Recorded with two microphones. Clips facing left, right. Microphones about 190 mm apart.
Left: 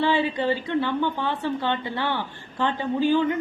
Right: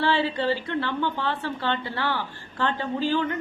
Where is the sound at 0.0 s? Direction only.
15° left (ahead or behind).